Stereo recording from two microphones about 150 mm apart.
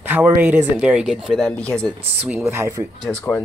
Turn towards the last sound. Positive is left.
turn(degrees=15)  # may be behind; listen again after turning